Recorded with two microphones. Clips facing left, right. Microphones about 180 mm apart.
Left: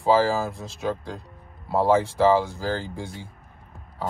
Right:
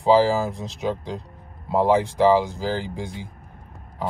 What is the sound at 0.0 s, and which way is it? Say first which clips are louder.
Speech: right 3 dB; 15° right (ahead or behind).